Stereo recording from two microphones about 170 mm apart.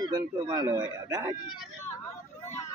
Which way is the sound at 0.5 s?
20° right (ahead or behind).